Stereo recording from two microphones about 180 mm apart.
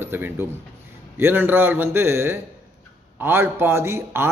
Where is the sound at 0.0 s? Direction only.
10° right (ahead or behind).